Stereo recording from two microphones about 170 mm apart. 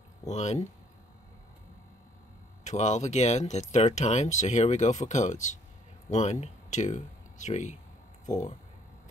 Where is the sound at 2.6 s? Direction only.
45° left (ahead or behind).